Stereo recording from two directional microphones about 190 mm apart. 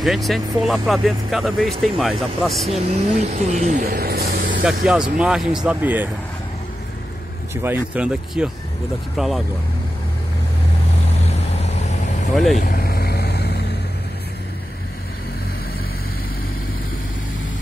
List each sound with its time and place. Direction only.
0.0 s speech: centre (ahead or behind)
2.9 s speech: 35° right (ahead or behind)
3.8 s speech: 55° right (ahead or behind)
4.6 s speech: 5° right (ahead or behind)
7.6 s speech: 10° right (ahead or behind)
11.2 s vehicle: 35° left (ahead or behind)
12.5 s vehicle: 50° left (ahead or behind)